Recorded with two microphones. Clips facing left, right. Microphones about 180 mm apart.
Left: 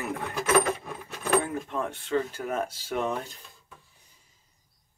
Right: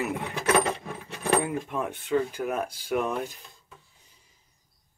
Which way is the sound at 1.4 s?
10° right (ahead or behind).